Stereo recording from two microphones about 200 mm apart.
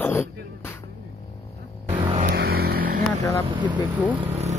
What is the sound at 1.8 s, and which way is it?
Vehicle, 25° right (ahead or behind).